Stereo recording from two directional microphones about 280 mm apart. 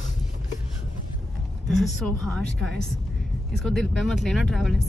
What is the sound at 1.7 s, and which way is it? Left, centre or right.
Speech, centre.